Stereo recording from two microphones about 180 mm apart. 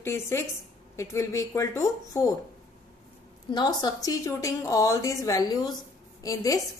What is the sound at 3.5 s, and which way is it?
A woman's voice, 25° left (ahead or behind).